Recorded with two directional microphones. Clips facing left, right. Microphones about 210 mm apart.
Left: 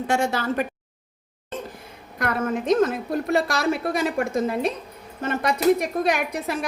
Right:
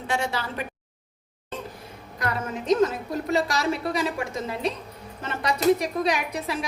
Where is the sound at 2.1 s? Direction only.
55° left (ahead or behind).